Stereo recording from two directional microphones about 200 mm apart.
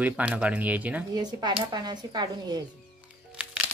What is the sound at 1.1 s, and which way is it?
Speech, 20° right (ahead or behind).